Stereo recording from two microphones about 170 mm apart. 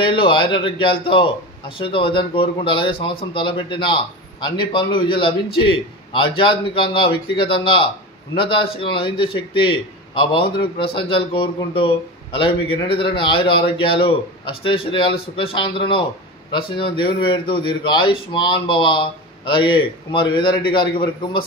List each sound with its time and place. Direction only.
0.0 s a man's voice: 30° left (ahead or behind)